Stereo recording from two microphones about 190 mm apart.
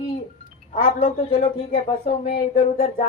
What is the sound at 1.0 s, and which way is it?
Speech, 35° left (ahead or behind).